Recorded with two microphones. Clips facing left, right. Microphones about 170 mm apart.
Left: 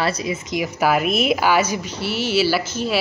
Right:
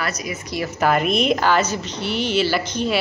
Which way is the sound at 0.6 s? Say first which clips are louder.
Even; 5° left (ahead or behind).